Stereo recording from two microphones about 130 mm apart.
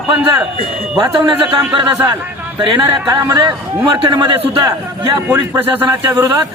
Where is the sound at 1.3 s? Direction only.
35° right (ahead or behind).